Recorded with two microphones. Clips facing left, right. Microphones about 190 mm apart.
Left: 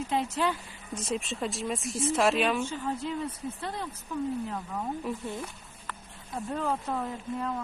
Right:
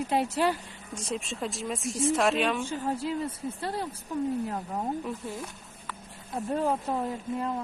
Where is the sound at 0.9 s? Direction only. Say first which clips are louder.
Left 1 dB; centre (ahead or behind).